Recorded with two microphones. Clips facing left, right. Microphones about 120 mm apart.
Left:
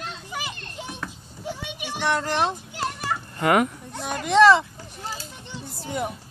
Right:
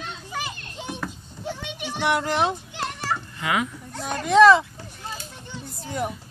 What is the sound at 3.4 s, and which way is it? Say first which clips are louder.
Speech: left 7 dB; 50° left (ahead or behind).